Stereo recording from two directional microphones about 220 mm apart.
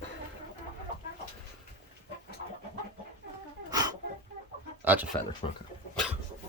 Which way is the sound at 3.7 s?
15° right (ahead or behind).